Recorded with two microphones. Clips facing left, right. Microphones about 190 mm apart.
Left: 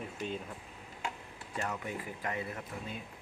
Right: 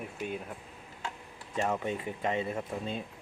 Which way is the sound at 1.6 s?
25° right (ahead or behind).